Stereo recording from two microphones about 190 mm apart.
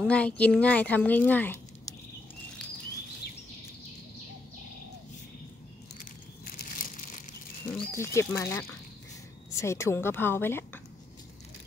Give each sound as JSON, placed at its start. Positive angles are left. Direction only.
{"t": 0.0, "sound": "a woman's voice", "side_deg": 5}
{"t": 5.9, "sound": "crumpling", "side_deg": 45}
{"t": 7.9, "sound": "a woman's voice", "side_deg": 15}